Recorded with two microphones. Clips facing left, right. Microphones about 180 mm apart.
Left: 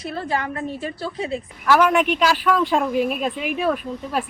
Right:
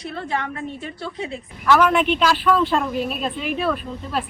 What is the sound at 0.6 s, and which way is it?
Speech, centre (ahead or behind).